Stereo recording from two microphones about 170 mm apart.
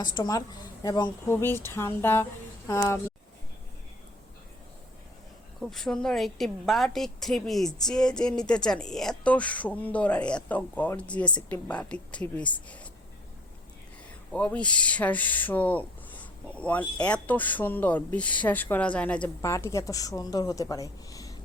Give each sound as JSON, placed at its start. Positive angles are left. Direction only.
{"t": 0.0, "sound": "speech", "side_deg": 25}
{"t": 5.5, "sound": "a woman's voice", "side_deg": 0}
{"t": 14.3, "sound": "speech", "side_deg": 5}